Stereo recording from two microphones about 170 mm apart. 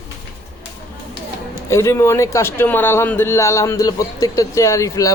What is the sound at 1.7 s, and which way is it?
A man's voice, 15° left (ahead or behind).